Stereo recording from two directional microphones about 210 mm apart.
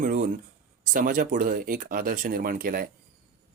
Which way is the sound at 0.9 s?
40° right (ahead or behind).